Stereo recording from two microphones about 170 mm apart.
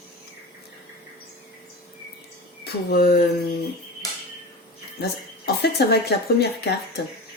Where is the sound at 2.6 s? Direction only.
65° left (ahead or behind).